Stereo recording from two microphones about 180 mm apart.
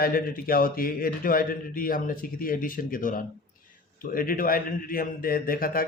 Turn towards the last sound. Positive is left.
turn(degrees=55)  # may be behind; listen again after turning